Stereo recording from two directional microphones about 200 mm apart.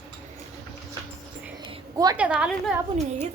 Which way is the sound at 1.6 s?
20° right (ahead or behind).